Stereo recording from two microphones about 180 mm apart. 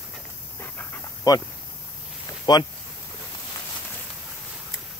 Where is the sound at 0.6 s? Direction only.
15° left (ahead or behind).